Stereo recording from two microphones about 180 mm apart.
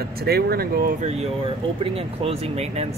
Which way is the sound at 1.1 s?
35° right (ahead or behind).